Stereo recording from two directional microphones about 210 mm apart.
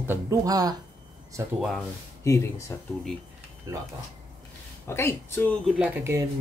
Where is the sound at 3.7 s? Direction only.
15° right (ahead or behind).